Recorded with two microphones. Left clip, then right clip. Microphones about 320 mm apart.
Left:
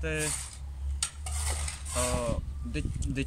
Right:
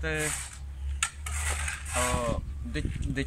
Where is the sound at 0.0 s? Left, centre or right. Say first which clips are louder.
Right 2 dB; centre.